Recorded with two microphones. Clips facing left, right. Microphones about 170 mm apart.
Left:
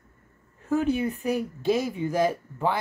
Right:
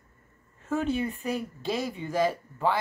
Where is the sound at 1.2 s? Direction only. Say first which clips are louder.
Left 6 dB; 15° left (ahead or behind).